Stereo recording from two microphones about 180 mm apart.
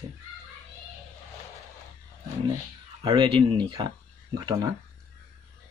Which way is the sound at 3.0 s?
30° right (ahead or behind).